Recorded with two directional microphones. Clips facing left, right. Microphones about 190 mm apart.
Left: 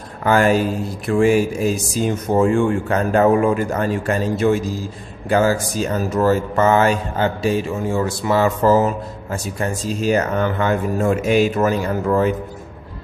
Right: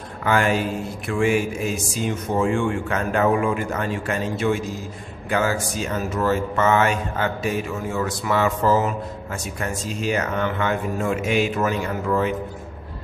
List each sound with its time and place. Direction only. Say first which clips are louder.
0.2 s speech: left 5 dB; 40° left (ahead or behind)